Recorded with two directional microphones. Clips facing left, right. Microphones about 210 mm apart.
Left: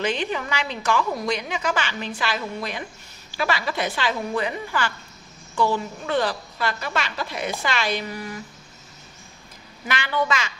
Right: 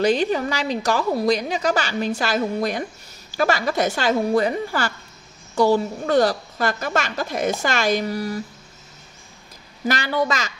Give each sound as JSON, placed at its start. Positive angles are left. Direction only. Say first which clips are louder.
{"t": 0.0, "sound": "a woman's voice", "louder": "right 7 dB", "side_deg": -40}
{"t": 9.8, "sound": "a woman's voice", "louder": "right 3 dB", "side_deg": -40}